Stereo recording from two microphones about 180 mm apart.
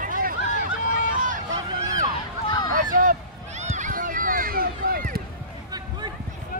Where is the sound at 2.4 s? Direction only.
25° left (ahead or behind).